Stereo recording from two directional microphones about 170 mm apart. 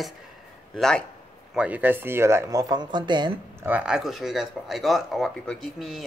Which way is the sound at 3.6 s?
10° right (ahead or behind).